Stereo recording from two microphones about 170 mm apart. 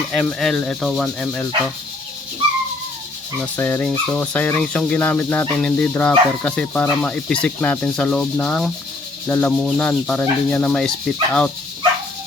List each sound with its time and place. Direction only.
0.1 s speech: centre (ahead or behind)
3.4 s speech: 10° left (ahead or behind)
9.5 s speech: 5° right (ahead or behind)